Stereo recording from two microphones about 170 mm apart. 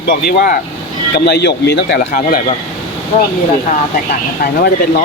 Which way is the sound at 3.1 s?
50° left (ahead or behind).